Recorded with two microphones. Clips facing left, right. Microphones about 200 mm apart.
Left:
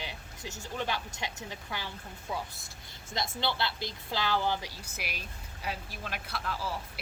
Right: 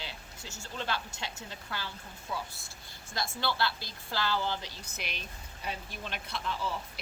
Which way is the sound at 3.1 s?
20° left (ahead or behind).